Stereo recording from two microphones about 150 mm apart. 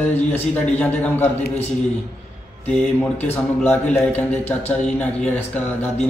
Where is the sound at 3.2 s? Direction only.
10° left (ahead or behind).